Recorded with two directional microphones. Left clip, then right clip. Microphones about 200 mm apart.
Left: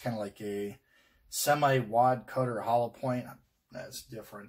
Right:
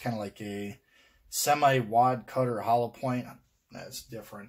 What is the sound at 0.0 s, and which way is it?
Speech, 35° right (ahead or behind).